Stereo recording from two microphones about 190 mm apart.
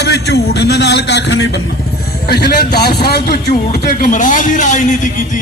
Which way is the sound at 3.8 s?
45° left (ahead or behind).